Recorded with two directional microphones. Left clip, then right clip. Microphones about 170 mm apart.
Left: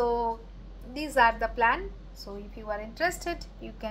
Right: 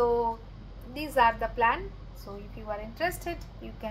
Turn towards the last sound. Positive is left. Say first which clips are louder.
# left 1 dB
turn(degrees=10)  # may be behind; listen again after turning